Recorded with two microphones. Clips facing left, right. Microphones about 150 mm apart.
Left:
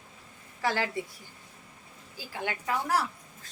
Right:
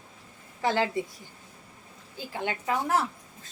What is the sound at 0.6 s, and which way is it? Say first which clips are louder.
Speech: right 4 dB; 20° right (ahead or behind).